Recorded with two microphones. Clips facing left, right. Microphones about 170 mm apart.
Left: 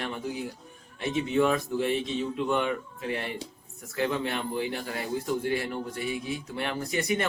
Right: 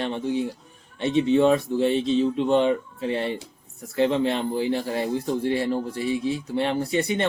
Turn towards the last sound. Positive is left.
turn(degrees=-30)  # may be behind; listen again after turning